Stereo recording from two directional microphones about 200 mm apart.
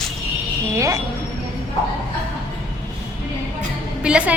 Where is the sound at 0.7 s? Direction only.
15° right (ahead or behind).